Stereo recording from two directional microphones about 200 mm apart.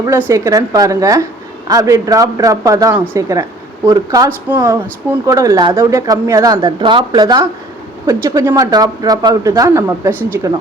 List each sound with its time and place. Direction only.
0.0 s a woman's voice: 15° right (ahead or behind)